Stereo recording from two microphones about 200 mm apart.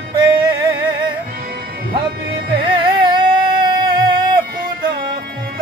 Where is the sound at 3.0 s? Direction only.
20° right (ahead or behind).